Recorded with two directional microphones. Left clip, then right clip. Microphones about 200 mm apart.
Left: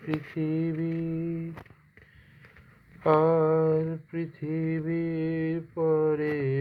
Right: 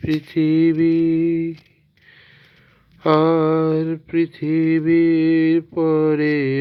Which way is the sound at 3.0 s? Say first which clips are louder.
Right 6 dB; 30° right (ahead or behind).